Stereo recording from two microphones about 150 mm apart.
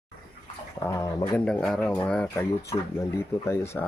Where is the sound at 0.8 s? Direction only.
20° left (ahead or behind).